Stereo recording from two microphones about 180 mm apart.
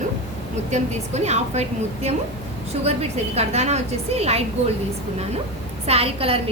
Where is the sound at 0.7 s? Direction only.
40° right (ahead or behind).